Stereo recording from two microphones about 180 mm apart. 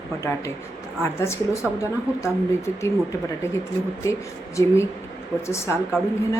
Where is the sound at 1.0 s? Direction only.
15° left (ahead or behind).